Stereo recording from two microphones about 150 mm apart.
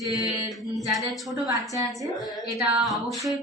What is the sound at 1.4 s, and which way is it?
Speech, 20° right (ahead or behind).